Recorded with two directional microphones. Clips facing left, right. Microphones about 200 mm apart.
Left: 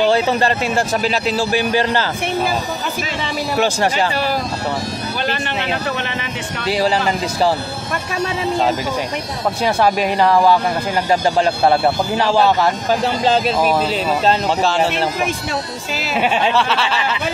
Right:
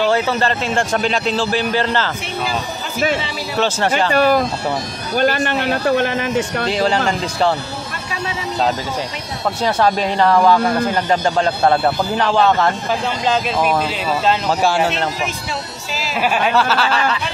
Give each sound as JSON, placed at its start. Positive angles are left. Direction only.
{"t": 0.3, "sound": "a man's voice", "side_deg": 15}
{"t": 3.5, "sound": "a man's voice", "side_deg": 10}
{"t": 4.1, "sound": "speech", "side_deg": -50}
{"t": 6.7, "sound": "speech", "side_deg": 5}
{"t": 9.6, "sound": "a man's voice", "side_deg": 10}
{"t": 14.6, "sound": "speech", "side_deg": -10}
{"t": 16.2, "sound": "speech", "side_deg": 25}
{"t": 16.5, "sound": "speech", "side_deg": 0}